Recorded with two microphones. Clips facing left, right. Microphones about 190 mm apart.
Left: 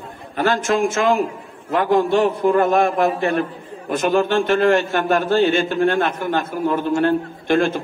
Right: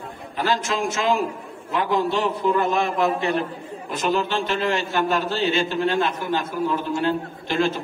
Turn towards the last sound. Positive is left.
turn(degrees=55)  # may be behind; listen again after turning